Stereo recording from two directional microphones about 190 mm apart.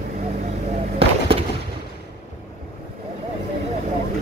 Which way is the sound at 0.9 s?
30° right (ahead or behind).